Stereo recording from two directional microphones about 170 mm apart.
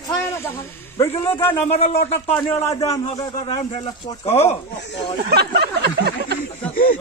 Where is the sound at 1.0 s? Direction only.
35° left (ahead or behind).